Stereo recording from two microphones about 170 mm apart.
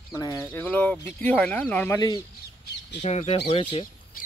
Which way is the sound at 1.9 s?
20° left (ahead or behind).